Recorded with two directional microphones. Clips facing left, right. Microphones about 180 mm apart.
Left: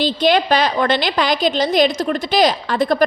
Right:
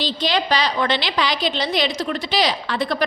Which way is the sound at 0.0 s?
50° left (ahead or behind).